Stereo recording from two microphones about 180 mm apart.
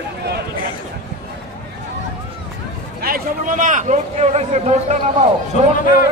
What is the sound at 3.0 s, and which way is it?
A man's voice, 50° right (ahead or behind).